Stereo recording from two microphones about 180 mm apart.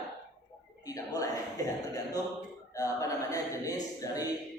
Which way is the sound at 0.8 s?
20° left (ahead or behind).